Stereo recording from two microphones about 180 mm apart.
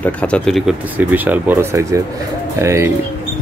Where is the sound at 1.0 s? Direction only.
10° right (ahead or behind).